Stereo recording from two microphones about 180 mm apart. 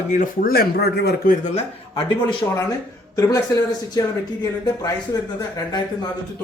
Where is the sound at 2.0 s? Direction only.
25° left (ahead or behind).